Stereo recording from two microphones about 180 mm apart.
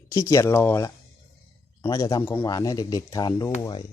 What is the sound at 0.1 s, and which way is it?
Speech, 15° left (ahead or behind).